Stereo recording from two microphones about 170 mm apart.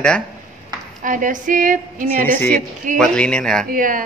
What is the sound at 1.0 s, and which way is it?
A woman's voice, 50° right (ahead or behind).